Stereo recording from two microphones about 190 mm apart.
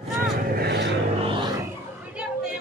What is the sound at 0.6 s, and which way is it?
Vehicle, 60° right (ahead or behind).